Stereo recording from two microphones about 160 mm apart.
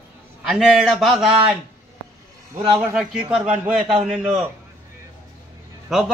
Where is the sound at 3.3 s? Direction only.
10° right (ahead or behind).